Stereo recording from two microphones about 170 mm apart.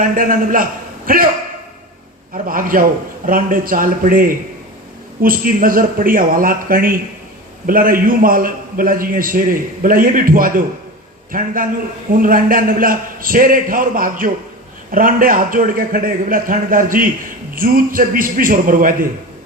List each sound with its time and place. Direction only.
0.0 s a man's voice: 55° right (ahead or behind)
2.3 s a man's voice: 55° right (ahead or behind)